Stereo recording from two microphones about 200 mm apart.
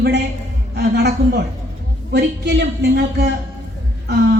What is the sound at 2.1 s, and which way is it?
A woman's voice, 60° right (ahead or behind).